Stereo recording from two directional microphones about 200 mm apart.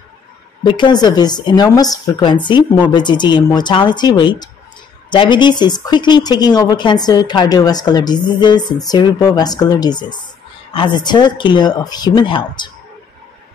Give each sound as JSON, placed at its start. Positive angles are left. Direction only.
{"t": 0.7, "sound": "speech", "side_deg": 20}